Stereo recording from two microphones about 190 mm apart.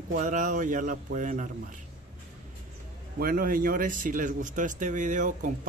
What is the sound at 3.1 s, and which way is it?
Speech, 50° right (ahead or behind).